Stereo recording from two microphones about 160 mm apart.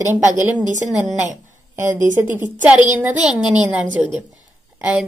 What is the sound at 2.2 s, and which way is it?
Speech, 10° right (ahead or behind).